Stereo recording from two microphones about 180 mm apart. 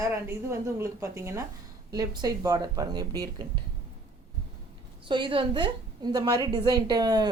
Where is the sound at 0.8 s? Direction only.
15° right (ahead or behind).